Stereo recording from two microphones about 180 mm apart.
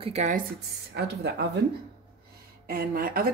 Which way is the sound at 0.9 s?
70° right (ahead or behind).